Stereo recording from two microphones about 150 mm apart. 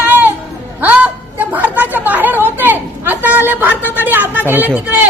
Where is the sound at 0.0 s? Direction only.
10° right (ahead or behind).